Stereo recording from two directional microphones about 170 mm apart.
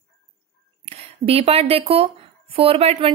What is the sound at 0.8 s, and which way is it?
A woman's voice, 35° right (ahead or behind).